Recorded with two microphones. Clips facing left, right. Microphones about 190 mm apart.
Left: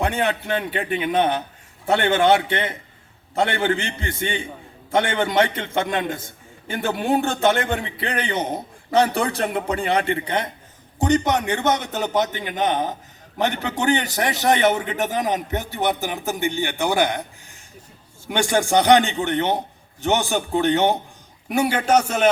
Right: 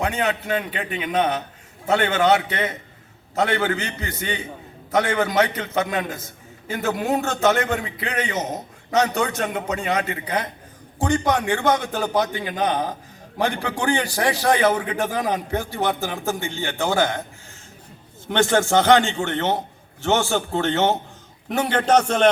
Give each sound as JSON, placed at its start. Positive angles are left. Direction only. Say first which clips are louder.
{"t": 0.1, "sound": "a man's voice", "louder": "even", "side_deg": 30}
{"t": 18.3, "sound": "a man's voice", "louder": "right 1 dB", "side_deg": 10}